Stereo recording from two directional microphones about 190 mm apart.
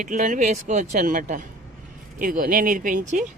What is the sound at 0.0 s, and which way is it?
Speech, 45° right (ahead or behind).